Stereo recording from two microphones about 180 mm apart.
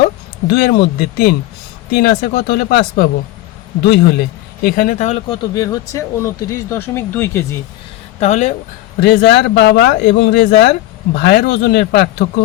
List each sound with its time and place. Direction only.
0.0 s a man's voice: 60° left (ahead or behind)
4.6 s speech: 50° left (ahead or behind)
5.5 s speech: 20° left (ahead or behind)
8.2 s speech: 40° left (ahead or behind)
9.0 s a man's voice: 65° left (ahead or behind)